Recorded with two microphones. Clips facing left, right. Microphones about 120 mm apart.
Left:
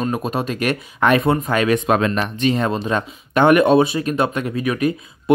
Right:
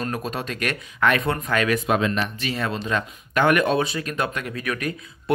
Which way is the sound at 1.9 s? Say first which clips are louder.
Left 4 dB; 50° left (ahead or behind).